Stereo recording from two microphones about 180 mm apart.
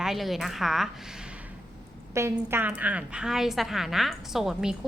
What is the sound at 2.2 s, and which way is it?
A woman's voice, 15° right (ahead or behind).